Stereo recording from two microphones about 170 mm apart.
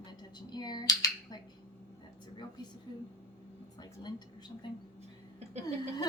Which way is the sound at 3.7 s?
25° left (ahead or behind).